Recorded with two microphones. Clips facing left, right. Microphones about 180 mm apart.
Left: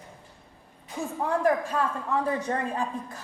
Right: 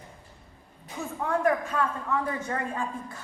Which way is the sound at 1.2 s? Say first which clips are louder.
Left 1 dB; 35° left (ahead or behind).